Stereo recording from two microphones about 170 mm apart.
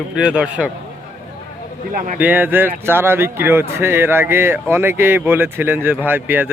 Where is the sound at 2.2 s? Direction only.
10° right (ahead or behind).